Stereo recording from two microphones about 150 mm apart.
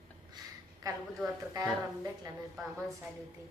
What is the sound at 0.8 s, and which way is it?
Speech, 25° right (ahead or behind).